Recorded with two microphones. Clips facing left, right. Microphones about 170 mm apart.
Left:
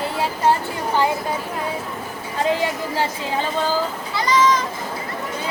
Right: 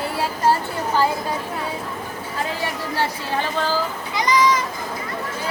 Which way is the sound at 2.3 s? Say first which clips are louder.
Left 6 dB; 15° left (ahead or behind).